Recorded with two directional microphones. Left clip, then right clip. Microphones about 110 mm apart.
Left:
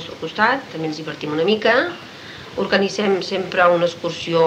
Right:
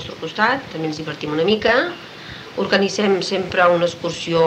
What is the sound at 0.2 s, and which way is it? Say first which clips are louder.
Speech: left 1 dB; 25° left (ahead or behind).